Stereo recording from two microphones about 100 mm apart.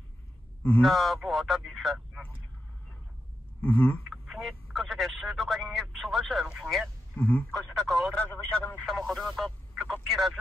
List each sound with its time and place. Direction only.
0.8 s speech: centre (ahead or behind)
3.6 s speech: 15° left (ahead or behind)
4.1 s speech: centre (ahead or behind)
7.2 s speech: 20° left (ahead or behind)
7.5 s speech: centre (ahead or behind)
8.3 s speech: 15° left (ahead or behind)
8.8 s speech: 5° left (ahead or behind)